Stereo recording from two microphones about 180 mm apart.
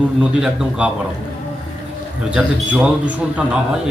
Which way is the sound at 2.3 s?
5° right (ahead or behind).